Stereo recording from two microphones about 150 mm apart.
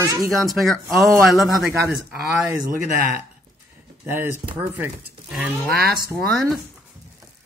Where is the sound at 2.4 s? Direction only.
15° right (ahead or behind).